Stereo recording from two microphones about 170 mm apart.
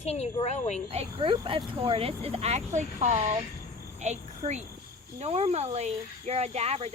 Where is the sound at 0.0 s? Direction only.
40° left (ahead or behind).